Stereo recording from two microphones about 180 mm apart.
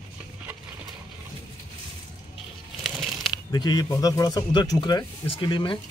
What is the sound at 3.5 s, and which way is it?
Speech, 20° left (ahead or behind).